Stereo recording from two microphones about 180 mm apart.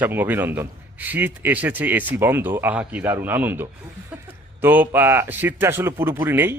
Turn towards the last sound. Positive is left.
turn(degrees=-10)  # may be behind; listen again after turning